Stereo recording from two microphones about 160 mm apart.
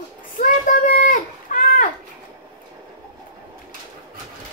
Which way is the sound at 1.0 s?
60° left (ahead or behind).